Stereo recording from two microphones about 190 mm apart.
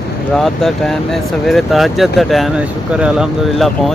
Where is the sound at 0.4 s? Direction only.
Centre (ahead or behind).